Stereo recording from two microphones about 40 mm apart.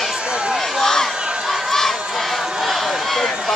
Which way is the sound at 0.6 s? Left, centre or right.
Centre.